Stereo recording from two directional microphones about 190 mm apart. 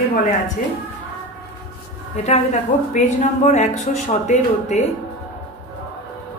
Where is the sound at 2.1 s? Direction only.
35° left (ahead or behind).